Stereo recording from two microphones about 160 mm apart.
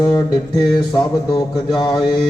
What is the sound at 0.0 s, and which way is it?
A man's voice, 25° left (ahead or behind).